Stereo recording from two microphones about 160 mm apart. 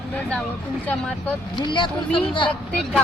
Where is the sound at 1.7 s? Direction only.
30° left (ahead or behind).